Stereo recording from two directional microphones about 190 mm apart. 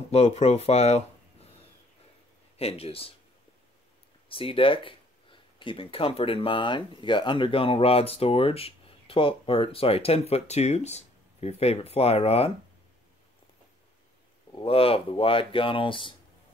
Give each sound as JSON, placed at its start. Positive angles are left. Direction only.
{"t": 0.1, "sound": "speech", "side_deg": 35}
{"t": 2.5, "sound": "speech", "side_deg": 30}
{"t": 4.3, "sound": "speech", "side_deg": 30}
{"t": 14.5, "sound": "speech", "side_deg": 30}